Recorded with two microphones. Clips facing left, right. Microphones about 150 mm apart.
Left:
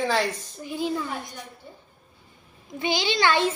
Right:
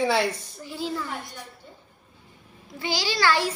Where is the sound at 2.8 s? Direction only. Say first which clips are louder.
Left 2 dB; 20° left (ahead or behind).